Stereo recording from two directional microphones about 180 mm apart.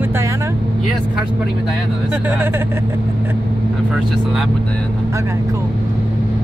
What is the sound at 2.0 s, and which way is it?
Speech, 10° right (ahead or behind).